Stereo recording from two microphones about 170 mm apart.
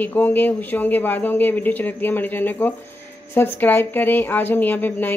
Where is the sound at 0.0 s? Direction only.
10° left (ahead or behind).